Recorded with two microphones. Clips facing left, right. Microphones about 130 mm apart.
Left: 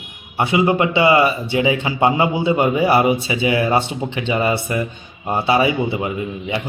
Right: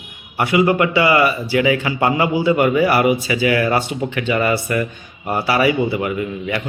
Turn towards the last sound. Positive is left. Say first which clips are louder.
# right 2 dB
turn(degrees=20)  # may be behind; listen again after turning